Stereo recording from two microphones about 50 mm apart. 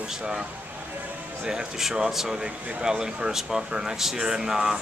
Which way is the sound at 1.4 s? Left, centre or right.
Centre.